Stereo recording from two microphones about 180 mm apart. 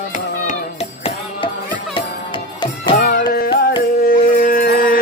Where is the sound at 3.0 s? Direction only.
55° left (ahead or behind).